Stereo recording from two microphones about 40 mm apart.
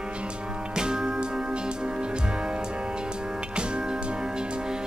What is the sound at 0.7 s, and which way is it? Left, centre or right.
Music, centre.